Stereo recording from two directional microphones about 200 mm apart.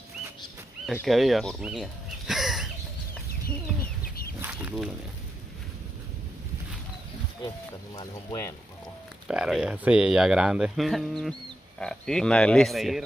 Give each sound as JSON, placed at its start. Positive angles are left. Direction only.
{"t": 1.0, "sound": "speech", "side_deg": 0}
{"t": 4.4, "sound": "chicken", "side_deg": -5}
{"t": 7.4, "sound": "speech", "side_deg": 20}
{"t": 9.3, "sound": "speech", "side_deg": -5}